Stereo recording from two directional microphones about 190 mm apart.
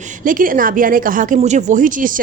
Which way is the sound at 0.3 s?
45° right (ahead or behind).